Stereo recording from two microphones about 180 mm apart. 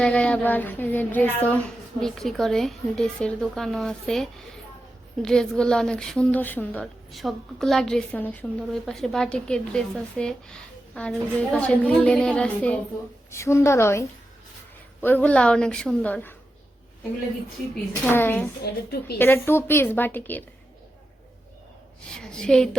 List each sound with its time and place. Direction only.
0.0 s a woman's voice: 5° left (ahead or behind)
15.0 s a woman's voice: 10° left (ahead or behind)
18.0 s a woman's voice: 10° left (ahead or behind)
18.6 s a woman's voice: 60° left (ahead or behind)
19.2 s a woman's voice: 10° left (ahead or behind)
22.1 s a woman's voice: 5° left (ahead or behind)